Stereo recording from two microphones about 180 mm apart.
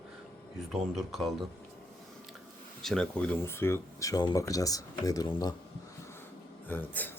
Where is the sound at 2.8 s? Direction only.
5° left (ahead or behind); by 5.5 s 20° left (ahead or behind).